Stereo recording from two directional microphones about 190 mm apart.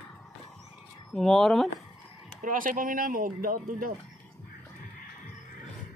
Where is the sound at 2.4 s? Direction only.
45° right (ahead or behind).